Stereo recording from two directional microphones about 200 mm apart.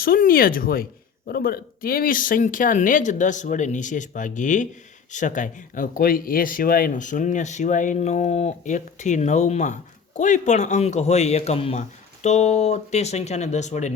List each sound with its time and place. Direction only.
0.0 s speech: 45° left (ahead or behind)